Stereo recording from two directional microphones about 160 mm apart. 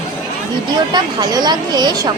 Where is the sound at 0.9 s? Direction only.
25° right (ahead or behind).